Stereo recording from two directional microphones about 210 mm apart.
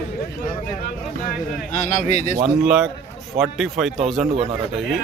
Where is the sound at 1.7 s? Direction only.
35° left (ahead or behind).